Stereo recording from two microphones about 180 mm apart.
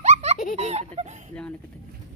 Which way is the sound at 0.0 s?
40° right (ahead or behind).